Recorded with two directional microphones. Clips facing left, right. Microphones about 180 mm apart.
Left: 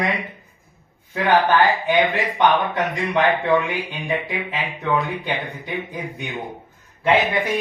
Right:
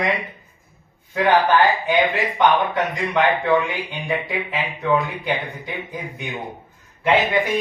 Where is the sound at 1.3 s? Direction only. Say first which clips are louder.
Left 1 dB; centre (ahead or behind).